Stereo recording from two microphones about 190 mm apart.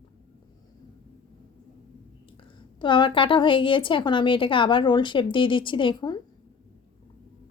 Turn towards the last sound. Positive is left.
turn(degrees=25)  # may be behind; listen again after turning